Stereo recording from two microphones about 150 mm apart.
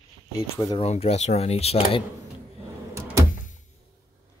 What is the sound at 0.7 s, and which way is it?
Speech, 40° left (ahead or behind).